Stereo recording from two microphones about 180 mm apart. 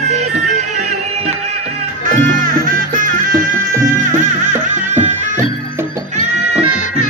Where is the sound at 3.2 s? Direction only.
50° right (ahead or behind).